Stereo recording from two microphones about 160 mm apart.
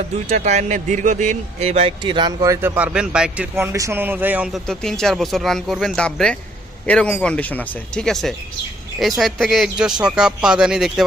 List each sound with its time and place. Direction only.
0.3 s speech: 45° right (ahead or behind); by 3.4 s 5° right (ahead or behind)
3.5 s speech: 15° right (ahead or behind)
4.7 s speech: 5° left (ahead or behind)